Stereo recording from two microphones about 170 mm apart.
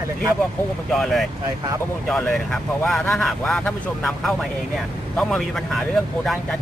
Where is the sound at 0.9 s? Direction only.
Centre (ahead or behind).